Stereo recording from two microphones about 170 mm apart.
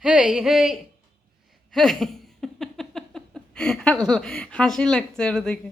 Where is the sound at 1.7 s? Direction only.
Centre (ahead or behind).